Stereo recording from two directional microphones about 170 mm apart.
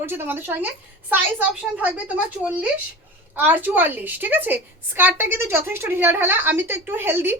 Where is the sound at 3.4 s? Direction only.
10° right (ahead or behind).